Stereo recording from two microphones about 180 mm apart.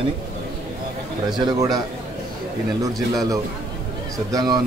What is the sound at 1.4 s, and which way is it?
Speech, 20° right (ahead or behind).